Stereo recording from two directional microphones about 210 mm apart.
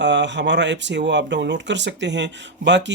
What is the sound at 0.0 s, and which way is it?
Speech, 55° right (ahead or behind).